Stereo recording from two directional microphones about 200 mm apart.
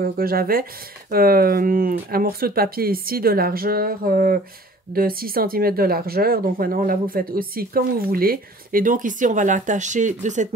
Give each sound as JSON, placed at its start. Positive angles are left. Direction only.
{"t": 0.0, "sound": "speech", "side_deg": -50}